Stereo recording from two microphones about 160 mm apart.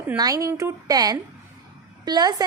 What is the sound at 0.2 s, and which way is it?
A woman's voice, 20° right (ahead or behind).